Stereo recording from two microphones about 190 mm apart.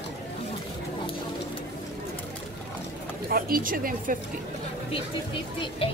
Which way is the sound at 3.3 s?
50° right (ahead or behind).